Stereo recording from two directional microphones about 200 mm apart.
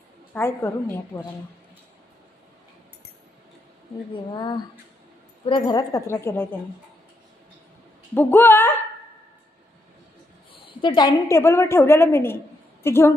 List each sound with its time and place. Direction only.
0.3 s a woman's voice: 10° left (ahead or behind)
4.1 s a woman's voice: 25° left (ahead or behind)
8.1 s a woman's voice: 10° left (ahead or behind)
10.5 s a woman's voice: 25° left (ahead or behind)